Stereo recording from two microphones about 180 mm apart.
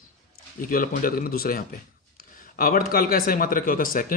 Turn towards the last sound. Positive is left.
turn(degrees=50)  # may be behind; listen again after turning